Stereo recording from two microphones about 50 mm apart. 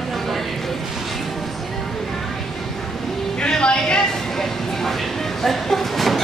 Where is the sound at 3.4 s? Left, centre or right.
Centre.